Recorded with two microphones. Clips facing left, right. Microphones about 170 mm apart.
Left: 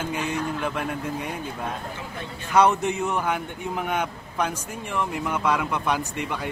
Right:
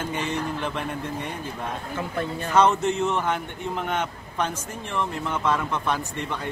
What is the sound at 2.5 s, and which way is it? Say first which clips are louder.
A man's voice: even; 10° left (ahead or behind).